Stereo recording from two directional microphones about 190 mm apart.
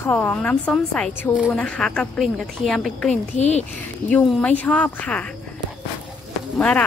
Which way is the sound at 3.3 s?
35° left (ahead or behind).